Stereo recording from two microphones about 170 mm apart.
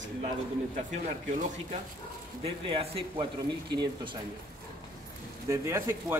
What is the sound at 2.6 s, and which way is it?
Speech, 30° right (ahead or behind).